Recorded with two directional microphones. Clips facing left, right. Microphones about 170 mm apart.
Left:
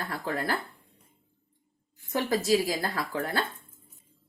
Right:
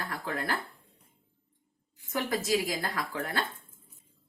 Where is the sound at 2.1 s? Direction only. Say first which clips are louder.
Left 4 dB; 30° left (ahead or behind).